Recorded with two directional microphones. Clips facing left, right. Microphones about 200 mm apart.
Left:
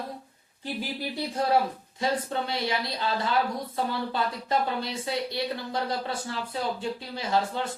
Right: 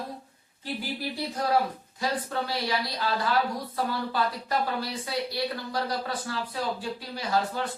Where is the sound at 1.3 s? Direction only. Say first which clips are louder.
Left 2 dB; 25° left (ahead or behind).